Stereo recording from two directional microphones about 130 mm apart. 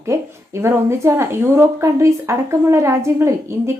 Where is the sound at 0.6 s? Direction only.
20° right (ahead or behind).